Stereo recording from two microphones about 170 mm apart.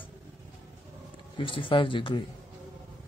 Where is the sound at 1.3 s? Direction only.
30° left (ahead or behind).